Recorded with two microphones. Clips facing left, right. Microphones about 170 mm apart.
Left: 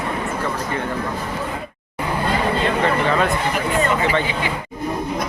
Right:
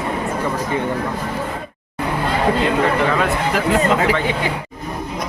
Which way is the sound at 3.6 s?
90° right.